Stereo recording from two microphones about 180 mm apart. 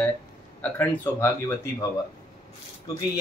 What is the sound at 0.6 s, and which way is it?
A man's voice, 10° left (ahead or behind).